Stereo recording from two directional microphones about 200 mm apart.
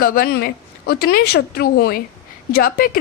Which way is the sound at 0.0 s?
50° left (ahead or behind).